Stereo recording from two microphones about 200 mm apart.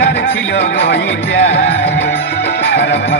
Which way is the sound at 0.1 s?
65° left (ahead or behind).